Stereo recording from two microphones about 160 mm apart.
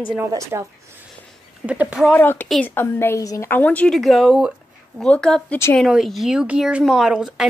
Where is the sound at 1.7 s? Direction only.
5° right (ahead or behind).